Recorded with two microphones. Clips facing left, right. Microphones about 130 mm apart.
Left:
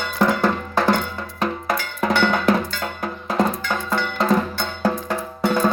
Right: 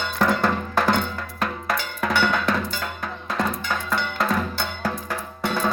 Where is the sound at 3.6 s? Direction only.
15° left (ahead or behind).